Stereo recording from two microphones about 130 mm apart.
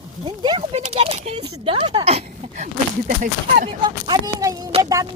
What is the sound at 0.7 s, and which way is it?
Speech, 55° right (ahead or behind).